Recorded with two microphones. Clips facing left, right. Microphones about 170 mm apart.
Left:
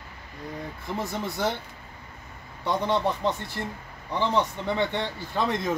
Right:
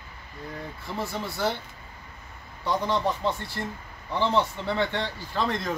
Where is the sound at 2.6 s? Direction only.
20° left (ahead or behind).